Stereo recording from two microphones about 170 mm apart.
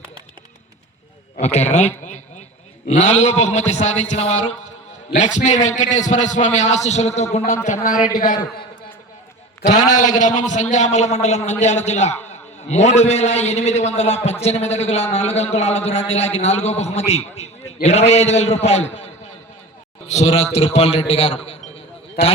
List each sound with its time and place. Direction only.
1.4 s a man's voice: 40° left (ahead or behind)
9.9 s a man's voice: 45° left (ahead or behind)